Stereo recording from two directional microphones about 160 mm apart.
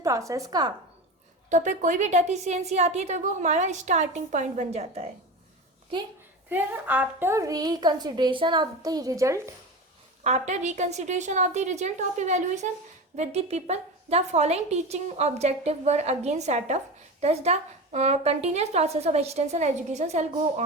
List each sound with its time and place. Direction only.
0.0 s a woman's voice: 20° right (ahead or behind)
1.5 s a woman's voice: 50° right (ahead or behind)
6.5 s a woman's voice: 10° right (ahead or behind)
10.2 s a woman's voice: 45° right (ahead or behind)